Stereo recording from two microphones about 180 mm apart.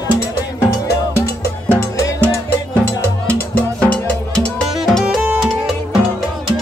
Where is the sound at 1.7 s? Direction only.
20° left (ahead or behind); by 5.8 s centre (ahead or behind).